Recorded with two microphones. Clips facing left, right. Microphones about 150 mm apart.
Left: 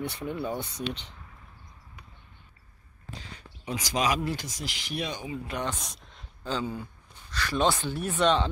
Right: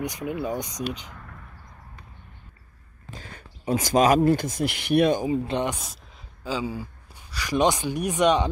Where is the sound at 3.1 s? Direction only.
50° right (ahead or behind).